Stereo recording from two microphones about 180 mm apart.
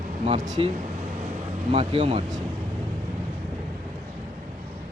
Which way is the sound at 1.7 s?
35° right (ahead or behind).